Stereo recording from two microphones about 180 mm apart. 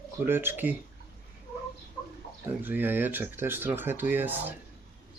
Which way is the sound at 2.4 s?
10° right (ahead or behind).